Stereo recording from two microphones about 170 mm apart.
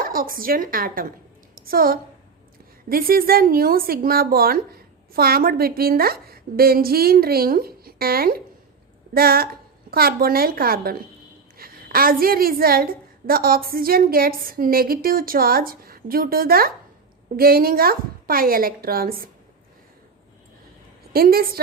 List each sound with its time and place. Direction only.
0.0 s a woman's voice: 60° right (ahead or behind)
21.1 s speech: 60° right (ahead or behind)